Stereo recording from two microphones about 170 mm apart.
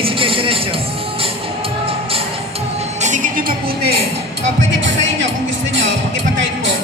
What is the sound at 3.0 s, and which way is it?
Music, 50° right (ahead or behind).